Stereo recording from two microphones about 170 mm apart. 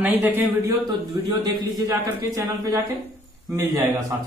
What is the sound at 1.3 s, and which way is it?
A man's voice, 20° right (ahead or behind).